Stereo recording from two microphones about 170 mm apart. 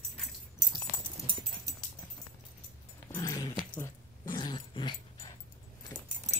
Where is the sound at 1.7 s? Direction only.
20° right (ahead or behind).